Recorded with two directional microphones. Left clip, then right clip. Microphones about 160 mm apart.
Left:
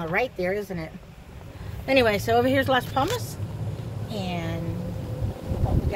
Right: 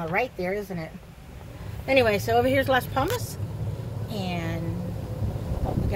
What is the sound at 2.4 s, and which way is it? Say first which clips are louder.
Speech: right 1 dB; 15° left (ahead or behind).